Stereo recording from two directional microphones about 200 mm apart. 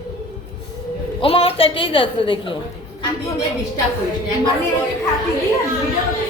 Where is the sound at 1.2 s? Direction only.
30° left (ahead or behind).